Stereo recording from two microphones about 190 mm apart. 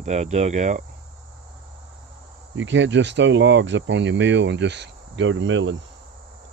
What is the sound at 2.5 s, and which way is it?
Speech, 75° right (ahead or behind).